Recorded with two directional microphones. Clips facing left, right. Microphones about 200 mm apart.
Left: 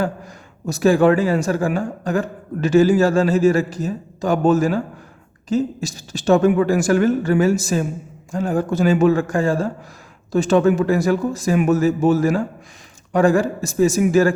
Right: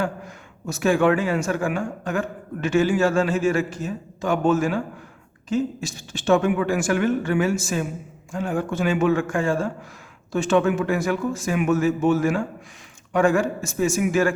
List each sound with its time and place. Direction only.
0.0 s a man's voice: 35° left (ahead or behind)